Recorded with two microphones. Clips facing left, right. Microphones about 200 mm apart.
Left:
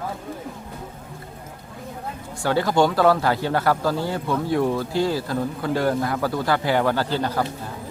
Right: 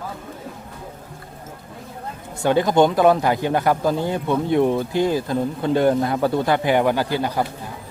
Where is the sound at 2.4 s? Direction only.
20° right (ahead or behind).